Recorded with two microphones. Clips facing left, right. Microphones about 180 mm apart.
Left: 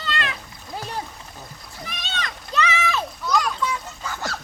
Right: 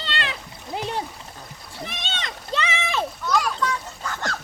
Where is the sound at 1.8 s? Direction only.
25° right (ahead or behind).